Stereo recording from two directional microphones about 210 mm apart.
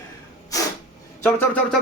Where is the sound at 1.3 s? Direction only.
5° left (ahead or behind).